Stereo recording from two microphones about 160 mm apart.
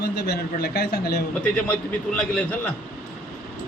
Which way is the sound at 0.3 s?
85° left.